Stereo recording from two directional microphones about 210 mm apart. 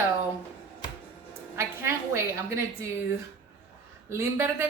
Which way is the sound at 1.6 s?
10° right (ahead or behind).